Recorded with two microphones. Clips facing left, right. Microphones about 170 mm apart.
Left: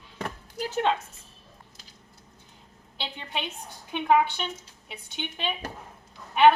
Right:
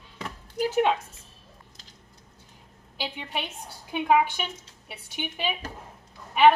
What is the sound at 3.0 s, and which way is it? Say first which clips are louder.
Speech: right 1 dB; 10° right (ahead or behind).